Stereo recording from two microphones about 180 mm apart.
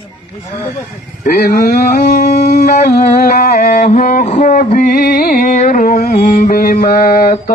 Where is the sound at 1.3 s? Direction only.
50° left (ahead or behind).